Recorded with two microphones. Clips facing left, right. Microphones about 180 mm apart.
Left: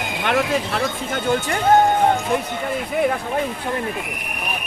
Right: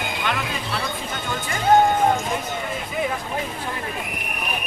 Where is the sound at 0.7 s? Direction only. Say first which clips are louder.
Left 5 dB; 50° left (ahead or behind).